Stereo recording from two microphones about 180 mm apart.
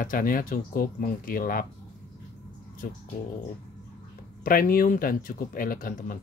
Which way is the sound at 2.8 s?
50° left (ahead or behind).